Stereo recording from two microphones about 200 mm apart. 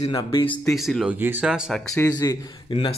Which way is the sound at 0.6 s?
Centre (ahead or behind).